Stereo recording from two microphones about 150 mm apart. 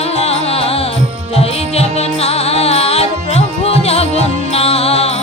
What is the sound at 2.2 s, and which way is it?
Music, 45° left (ahead or behind).